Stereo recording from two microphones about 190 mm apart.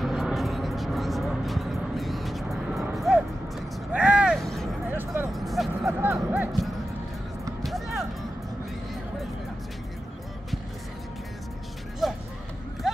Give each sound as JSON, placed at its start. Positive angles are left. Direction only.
{"t": 0.0, "sound": "music", "side_deg": 0}
{"t": 2.9, "sound": "vehicle", "side_deg": 0}
{"t": 4.9, "sound": "music", "side_deg": -10}
{"t": 5.3, "sound": "a sound", "side_deg": 0}
{"t": 5.9, "sound": "music", "side_deg": -10}
{"t": 12.0, "sound": "music", "side_deg": 0}
{"t": 12.8, "sound": "a sound", "side_deg": 0}